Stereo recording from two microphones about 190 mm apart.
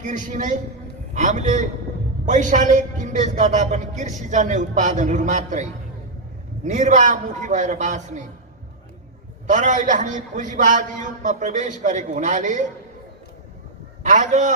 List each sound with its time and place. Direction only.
0.0 s a man's voice: 40° right (ahead or behind)
6.7 s a man's voice: 40° right (ahead or behind)
9.5 s a man's voice: 40° right (ahead or behind)
14.0 s a man's voice: 40° right (ahead or behind)